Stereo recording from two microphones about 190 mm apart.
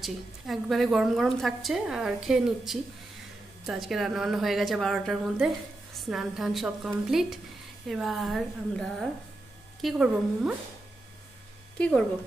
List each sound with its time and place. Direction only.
0.0 s a woman's voice: centre (ahead or behind)